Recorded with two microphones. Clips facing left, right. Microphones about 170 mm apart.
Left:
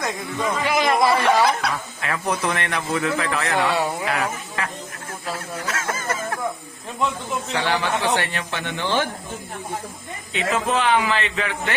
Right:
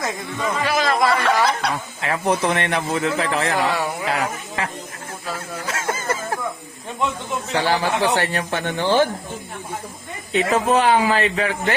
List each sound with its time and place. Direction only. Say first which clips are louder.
0.6 s speech: even; 20° left (ahead or behind)
2.0 s speech: right 5 dB; 30° right (ahead or behind)
5.6 s a sound: right 3 dB; 25° right (ahead or behind)
7.6 s speech: right 3 dB; 35° right (ahead or behind)
10.3 s speech: right 5 dB; 40° right (ahead or behind)